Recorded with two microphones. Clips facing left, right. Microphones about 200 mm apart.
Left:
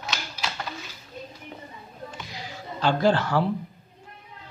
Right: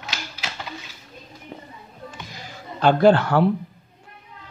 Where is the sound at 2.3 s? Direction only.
50° right (ahead or behind).